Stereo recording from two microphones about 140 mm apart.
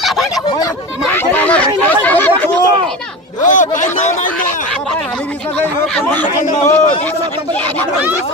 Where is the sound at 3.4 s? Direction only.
65° left (ahead or behind).